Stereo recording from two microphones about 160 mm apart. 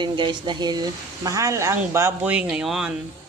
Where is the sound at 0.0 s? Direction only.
30° right (ahead or behind); by 2.9 s 5° right (ahead or behind).